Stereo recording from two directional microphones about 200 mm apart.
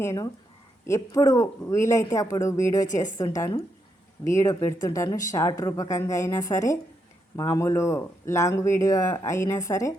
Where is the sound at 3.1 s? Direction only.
15° left (ahead or behind).